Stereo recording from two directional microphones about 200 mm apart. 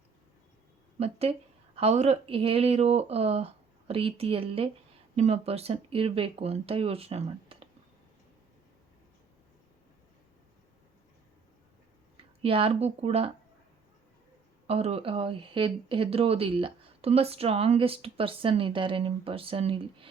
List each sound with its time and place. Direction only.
0.9 s a woman's voice: 30° right (ahead or behind)
12.4 s speech: 25° right (ahead or behind)
14.7 s speech: 30° right (ahead or behind)